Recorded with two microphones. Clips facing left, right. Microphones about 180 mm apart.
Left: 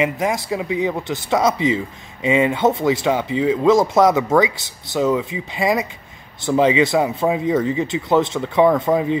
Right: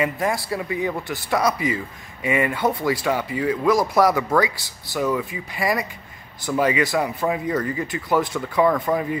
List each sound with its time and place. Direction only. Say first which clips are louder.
0.0 s speech: left 3 dB; 20° left (ahead or behind)